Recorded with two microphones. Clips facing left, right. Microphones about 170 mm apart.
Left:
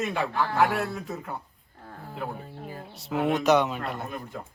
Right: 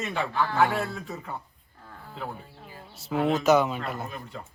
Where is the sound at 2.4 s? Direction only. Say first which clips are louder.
Left 7 dB; 45° left (ahead or behind).